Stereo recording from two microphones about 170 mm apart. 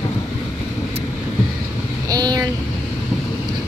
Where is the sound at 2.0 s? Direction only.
25° right (ahead or behind).